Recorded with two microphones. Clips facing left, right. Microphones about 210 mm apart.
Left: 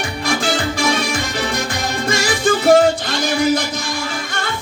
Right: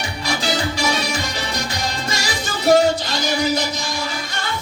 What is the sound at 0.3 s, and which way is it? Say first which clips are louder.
Music: left 3 dB; 50° left (ahead or behind).